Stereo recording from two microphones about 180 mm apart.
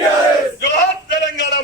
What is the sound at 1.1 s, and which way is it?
Speech, 80° left.